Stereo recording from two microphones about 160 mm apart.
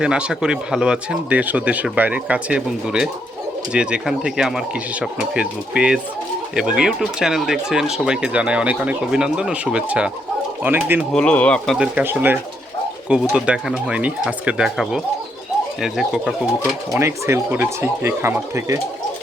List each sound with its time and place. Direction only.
0.0 s speech: 5° right (ahead or behind)
11.1 s speech: 5° left (ahead or behind)
16.9 s speech: 15° right (ahead or behind)